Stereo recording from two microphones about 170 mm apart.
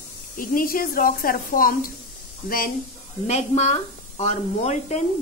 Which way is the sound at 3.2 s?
40° left (ahead or behind).